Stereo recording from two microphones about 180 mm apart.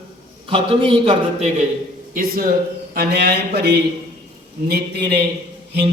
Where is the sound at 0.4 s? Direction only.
30° right (ahead or behind).